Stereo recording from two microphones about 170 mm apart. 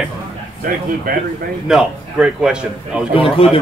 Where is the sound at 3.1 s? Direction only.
35° left (ahead or behind).